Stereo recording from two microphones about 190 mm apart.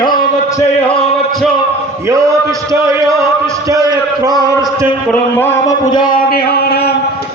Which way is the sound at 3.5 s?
20° right (ahead or behind).